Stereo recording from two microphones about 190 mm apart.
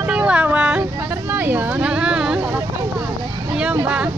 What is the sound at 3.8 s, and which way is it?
Speech, 5° right (ahead or behind).